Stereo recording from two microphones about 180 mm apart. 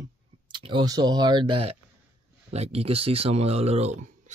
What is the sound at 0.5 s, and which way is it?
Speech, 25° right (ahead or behind).